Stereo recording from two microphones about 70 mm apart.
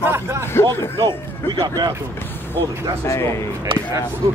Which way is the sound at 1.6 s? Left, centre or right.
Right.